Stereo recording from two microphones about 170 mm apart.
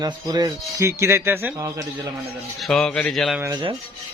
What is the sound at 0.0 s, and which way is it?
Speech, 20° right (ahead or behind).